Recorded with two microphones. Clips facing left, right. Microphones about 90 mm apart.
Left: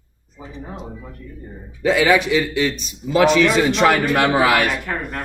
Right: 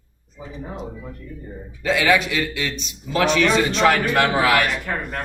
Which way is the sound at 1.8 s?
10° left (ahead or behind).